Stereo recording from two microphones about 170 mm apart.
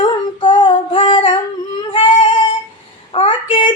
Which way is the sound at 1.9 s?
30° left (ahead or behind).